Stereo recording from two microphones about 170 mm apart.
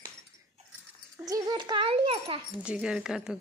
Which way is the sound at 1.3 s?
25° right (ahead or behind).